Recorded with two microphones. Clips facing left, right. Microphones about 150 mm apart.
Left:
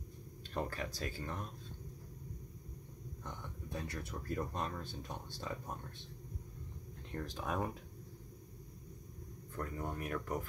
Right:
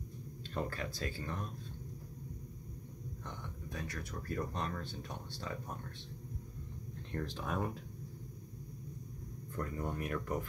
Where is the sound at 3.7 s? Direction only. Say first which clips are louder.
Left 1 dB; 25° left (ahead or behind).